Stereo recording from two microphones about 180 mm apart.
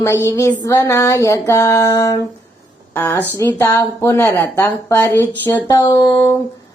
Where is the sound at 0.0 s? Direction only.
15° left (ahead or behind).